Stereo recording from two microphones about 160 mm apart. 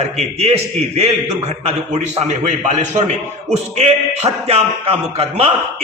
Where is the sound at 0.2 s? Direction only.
40° right (ahead or behind).